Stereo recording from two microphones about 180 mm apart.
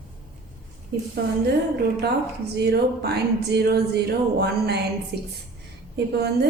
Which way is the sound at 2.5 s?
65° right (ahead or behind).